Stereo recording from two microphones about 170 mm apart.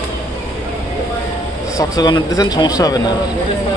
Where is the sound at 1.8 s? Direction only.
25° left (ahead or behind).